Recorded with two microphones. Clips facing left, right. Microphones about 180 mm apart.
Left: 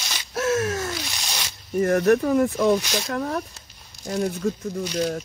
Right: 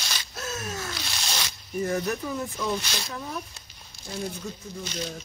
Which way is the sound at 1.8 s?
65° left (ahead or behind).